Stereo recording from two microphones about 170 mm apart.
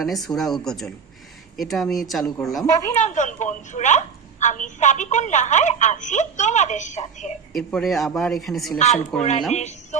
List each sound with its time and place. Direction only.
0.0 s a man's voice: centre (ahead or behind)
2.6 s a woman's voice: 20° left (ahead or behind)
2.9 s a woman's voice: 45° left (ahead or behind)
7.5 s a man's voice: centre (ahead or behind)
9.5 s a woman's voice: 40° left (ahead or behind)